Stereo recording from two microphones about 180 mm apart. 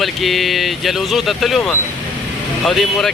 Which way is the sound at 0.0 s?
Centre (ahead or behind).